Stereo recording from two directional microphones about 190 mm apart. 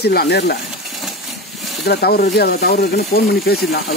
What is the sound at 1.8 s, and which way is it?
Speech, 55° left (ahead or behind).